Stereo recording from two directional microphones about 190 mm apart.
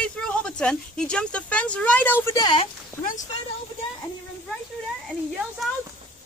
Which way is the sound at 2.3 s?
25° left (ahead or behind).